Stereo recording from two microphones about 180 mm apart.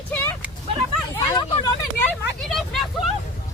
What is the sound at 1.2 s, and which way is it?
Hubbub, 25° left (ahead or behind).